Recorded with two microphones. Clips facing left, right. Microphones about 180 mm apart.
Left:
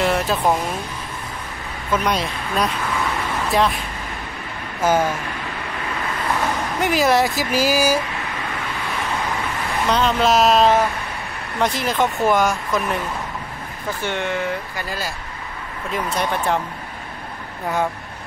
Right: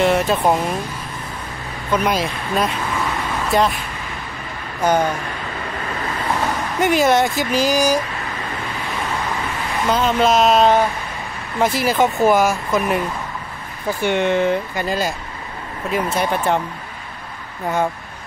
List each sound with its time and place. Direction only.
0.0 s music: centre (ahead or behind)
2.0 s speech: centre (ahead or behind)
4.8 s speech: 5° left (ahead or behind)
6.8 s speech: centre (ahead or behind)
9.8 s speech: centre (ahead or behind)
14.0 s speech: 20° right (ahead or behind)
15.9 s speech: 5° right (ahead or behind)